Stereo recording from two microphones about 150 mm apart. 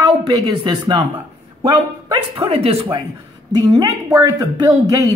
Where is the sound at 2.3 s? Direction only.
40° right (ahead or behind).